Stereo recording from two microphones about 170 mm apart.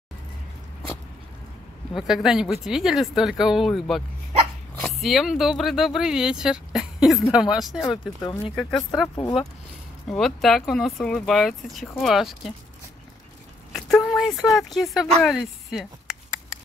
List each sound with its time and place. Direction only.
2.0 s speech: 5° right (ahead or behind)
8.2 s speech: 25° left (ahead or behind)
8.5 s speech: 5° left (ahead or behind)
14.0 s a sound: centre (ahead or behind)
14.5 s speech: centre (ahead or behind)